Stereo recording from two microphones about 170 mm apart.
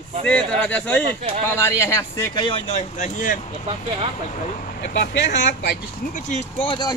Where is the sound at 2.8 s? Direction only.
50° left (ahead or behind); by 5.7 s 85° left.